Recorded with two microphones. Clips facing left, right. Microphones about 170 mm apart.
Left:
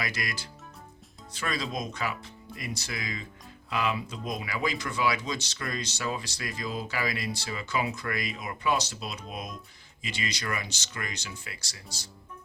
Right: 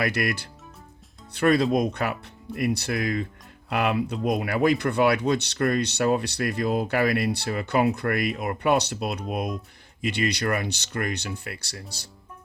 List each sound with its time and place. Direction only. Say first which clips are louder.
0.0 s speech: right 9 dB; 60° right (ahead or behind)